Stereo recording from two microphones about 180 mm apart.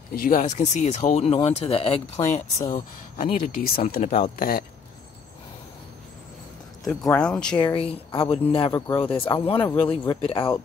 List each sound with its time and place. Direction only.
0.1 s speech: 50° left (ahead or behind); by 2.4 s 35° left (ahead or behind)
2.7 s speech: 50° left (ahead or behind)
4.4 s a man's voice: 55° left (ahead or behind)
7.2 s speech: 5° left (ahead or behind)
7.6 s speech: 25° left (ahead or behind)
9.6 s a man's voice: 10° left (ahead or behind)
9.8 s speech: 30° left (ahead or behind)